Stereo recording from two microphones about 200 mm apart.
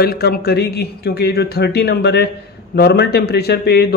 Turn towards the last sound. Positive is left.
turn(degrees=55)  # may be behind; listen again after turning